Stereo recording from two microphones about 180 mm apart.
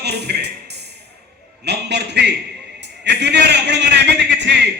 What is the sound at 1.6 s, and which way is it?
A man's voice, 70° right (ahead or behind).